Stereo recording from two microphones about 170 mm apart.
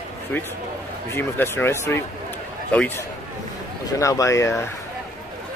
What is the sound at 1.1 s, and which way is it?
Speech, 15° left (ahead or behind).